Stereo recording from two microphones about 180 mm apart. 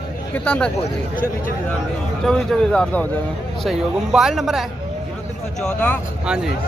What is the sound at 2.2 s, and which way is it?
Speech, 5° left (ahead or behind).